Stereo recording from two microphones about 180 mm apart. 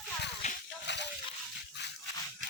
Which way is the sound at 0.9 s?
75° left (ahead or behind).